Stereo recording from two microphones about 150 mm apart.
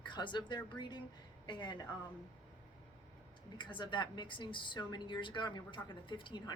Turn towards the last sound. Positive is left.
turn(degrees=30)  # may be behind; listen again after turning